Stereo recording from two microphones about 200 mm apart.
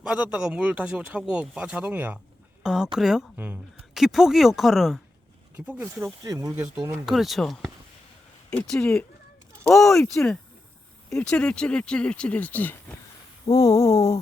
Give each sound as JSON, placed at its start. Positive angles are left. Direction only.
{"t": 0.0, "sound": "a woman's voice", "side_deg": -5}
{"t": 7.0, "sound": "a woman's voice", "side_deg": 0}
{"t": 13.4, "sound": "a sound", "side_deg": 15}